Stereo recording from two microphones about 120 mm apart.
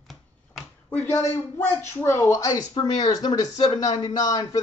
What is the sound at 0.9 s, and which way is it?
Speech, 20° left (ahead or behind).